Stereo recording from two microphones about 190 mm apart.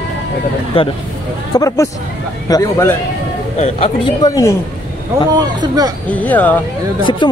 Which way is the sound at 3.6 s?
35° left (ahead or behind).